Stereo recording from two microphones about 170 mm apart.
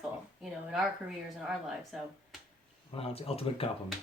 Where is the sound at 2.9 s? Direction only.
35° left (ahead or behind).